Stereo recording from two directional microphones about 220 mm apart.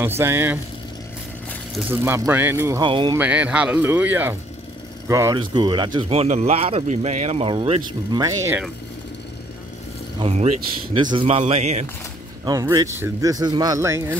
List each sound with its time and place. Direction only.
0.0 s speech: 10° right (ahead or behind)
1.8 s speech: 10° right (ahead or behind)
3.2 s speech: 5° right (ahead or behind)
10.1 s speech: 30° right (ahead or behind)
12.4 s speech: 15° right (ahead or behind)